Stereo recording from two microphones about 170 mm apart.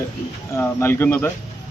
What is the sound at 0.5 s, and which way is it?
Speech, 15° left (ahead or behind).